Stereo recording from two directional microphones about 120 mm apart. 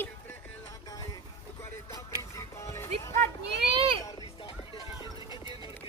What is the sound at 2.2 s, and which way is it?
Music, 25° left (ahead or behind).